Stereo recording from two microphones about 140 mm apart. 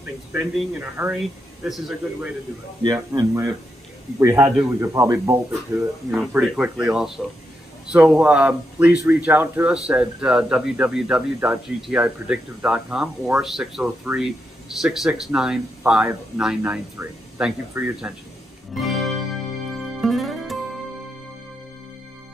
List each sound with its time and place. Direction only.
0.3 s speech: 10° right (ahead or behind)
2.8 s speech: 25° right (ahead or behind)
6.1 s speech: 5° right (ahead or behind)
18.8 s music: centre (ahead or behind)